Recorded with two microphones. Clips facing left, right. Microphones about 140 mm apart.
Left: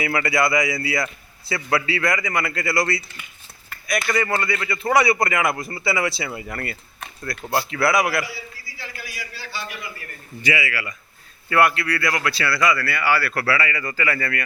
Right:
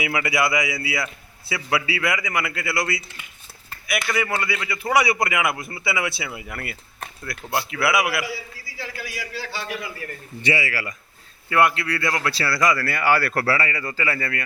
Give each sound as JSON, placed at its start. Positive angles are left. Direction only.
{"t": 0.0, "sound": "a man's voice", "side_deg": -10}
{"t": 8.8, "sound": "a man's voice", "side_deg": -90}
{"t": 10.4, "sound": "speech", "side_deg": -35}
{"t": 11.4, "sound": "speech", "side_deg": -20}